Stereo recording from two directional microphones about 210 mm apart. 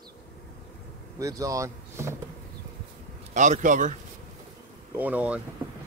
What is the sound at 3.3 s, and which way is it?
Speech, 35° right (ahead or behind).